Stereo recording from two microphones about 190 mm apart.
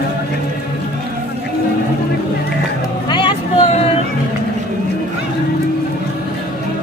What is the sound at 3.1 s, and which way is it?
Vehicle, 25° left (ahead or behind).